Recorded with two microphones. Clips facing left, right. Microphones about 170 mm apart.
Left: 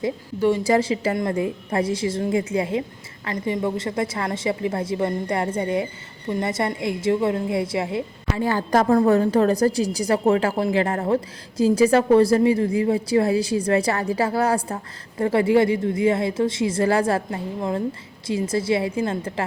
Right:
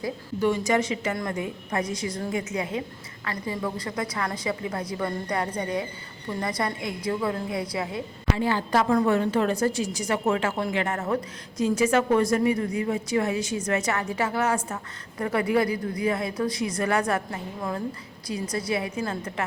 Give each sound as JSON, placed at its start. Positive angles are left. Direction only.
{"t": 0.0, "sound": "a woman's voice", "side_deg": 30}
{"t": 8.4, "sound": "a woman's voice", "side_deg": 45}